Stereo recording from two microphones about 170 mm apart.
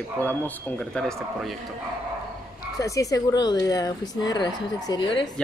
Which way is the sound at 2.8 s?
20° left (ahead or behind).